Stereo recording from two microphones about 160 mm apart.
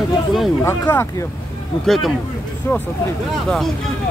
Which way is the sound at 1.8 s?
Centre (ahead or behind).